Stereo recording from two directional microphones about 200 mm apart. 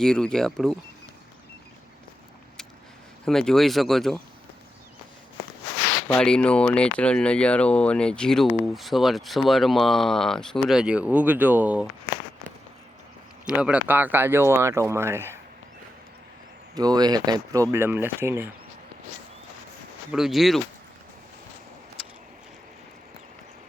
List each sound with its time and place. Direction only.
0.0 s speech: 5° left (ahead or behind)
3.2 s speech: centre (ahead or behind)
6.1 s speech: 5° left (ahead or behind)
13.6 s speech: 5° right (ahead or behind)
16.7 s speech: 20° right (ahead or behind)
20.1 s speech: centre (ahead or behind)